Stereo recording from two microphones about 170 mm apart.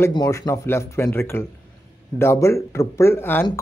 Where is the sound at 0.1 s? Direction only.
20° left (ahead or behind).